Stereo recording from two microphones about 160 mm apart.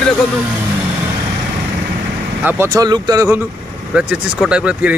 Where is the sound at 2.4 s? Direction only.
15° right (ahead or behind).